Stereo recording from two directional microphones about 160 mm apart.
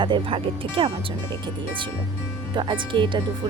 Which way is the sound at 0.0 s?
30° right (ahead or behind).